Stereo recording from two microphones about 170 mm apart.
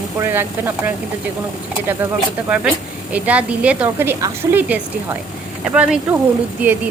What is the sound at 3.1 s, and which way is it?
A woman's voice, 10° right (ahead or behind).